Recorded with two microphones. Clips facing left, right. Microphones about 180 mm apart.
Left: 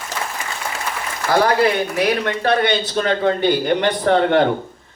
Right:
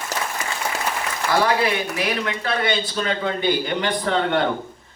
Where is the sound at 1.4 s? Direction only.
45° left (ahead or behind).